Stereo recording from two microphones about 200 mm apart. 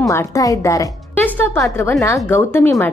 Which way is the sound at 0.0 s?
15° left (ahead or behind).